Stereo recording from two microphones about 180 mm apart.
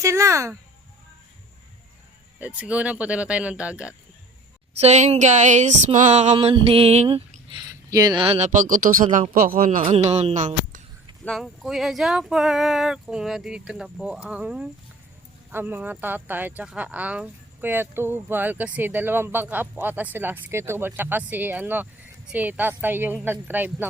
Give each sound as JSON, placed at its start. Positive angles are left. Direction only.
{"t": 0.0, "sound": "speech", "side_deg": -15}
{"t": 2.4, "sound": "speech", "side_deg": -10}
{"t": 4.8, "sound": "speech", "side_deg": -40}
{"t": 6.3, "sound": "a man's voice", "side_deg": -25}
{"t": 9.8, "sound": "speech", "side_deg": -35}
{"t": 11.3, "sound": "speech", "side_deg": 0}